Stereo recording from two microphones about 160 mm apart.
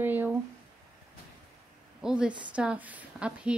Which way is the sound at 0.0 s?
10° right (ahead or behind).